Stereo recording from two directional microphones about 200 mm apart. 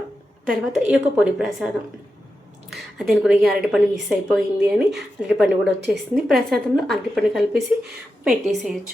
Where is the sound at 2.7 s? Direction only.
Centre (ahead or behind).